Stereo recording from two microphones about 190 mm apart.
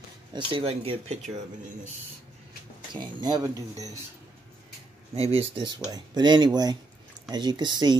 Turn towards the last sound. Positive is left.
turn(degrees=-20)  # may be behind; listen again after turning